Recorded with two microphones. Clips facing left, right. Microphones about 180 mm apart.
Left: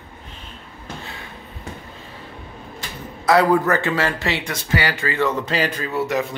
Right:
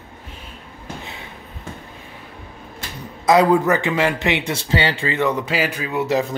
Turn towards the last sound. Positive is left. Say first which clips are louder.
# even
turn(degrees=-10)  # may be behind; listen again after turning